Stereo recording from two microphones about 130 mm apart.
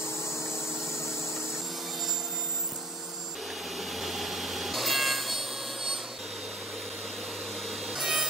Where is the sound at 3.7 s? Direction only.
Centre (ahead or behind).